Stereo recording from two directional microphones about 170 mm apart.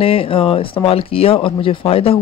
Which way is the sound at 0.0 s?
35° left (ahead or behind).